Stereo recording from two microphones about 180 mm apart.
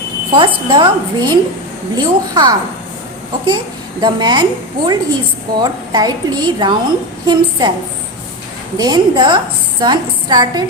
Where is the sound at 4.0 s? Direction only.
25° right (ahead or behind).